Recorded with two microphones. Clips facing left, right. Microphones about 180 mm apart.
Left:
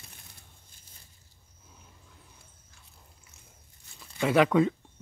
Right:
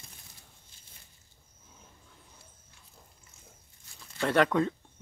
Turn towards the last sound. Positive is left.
turn(degrees=5)  # may be behind; listen again after turning